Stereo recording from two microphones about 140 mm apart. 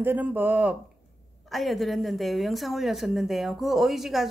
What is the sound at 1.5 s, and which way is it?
A woman's voice, centre (ahead or behind).